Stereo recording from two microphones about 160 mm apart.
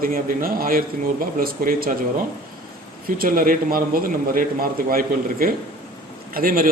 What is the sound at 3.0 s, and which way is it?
A man's voice, 65° right (ahead or behind).